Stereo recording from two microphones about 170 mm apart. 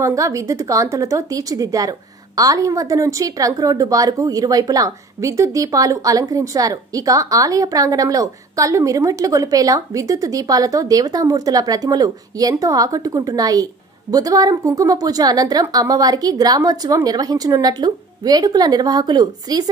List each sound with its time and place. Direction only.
0.0 s a woman's voice: 20° right (ahead or behind)